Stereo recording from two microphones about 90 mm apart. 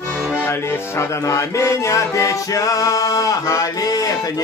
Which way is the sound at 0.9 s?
35° left (ahead or behind).